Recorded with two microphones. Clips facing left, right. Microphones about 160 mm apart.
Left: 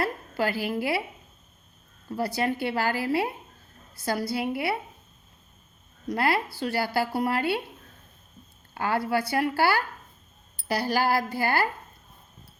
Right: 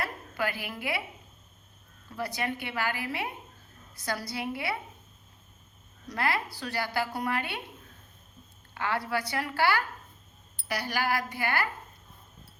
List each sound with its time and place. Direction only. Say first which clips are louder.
0.0 s a woman's voice: left 5 dB; 30° left (ahead or behind)
2.0 s a woman's voice: left 6 dB; 30° left (ahead or behind)
6.1 s a woman's voice: left 5 dB; 30° left (ahead or behind)
8.7 s a woman's voice: left 5 dB; 30° left (ahead or behind)